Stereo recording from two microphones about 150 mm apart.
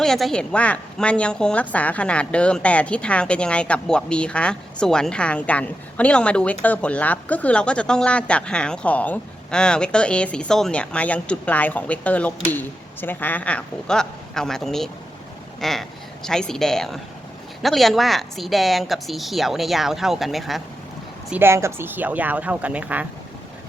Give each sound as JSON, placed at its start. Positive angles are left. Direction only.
{"t": 0.0, "sound": "a woman's voice", "side_deg": 0}
{"t": 21.2, "sound": "a woman's voice", "side_deg": -15}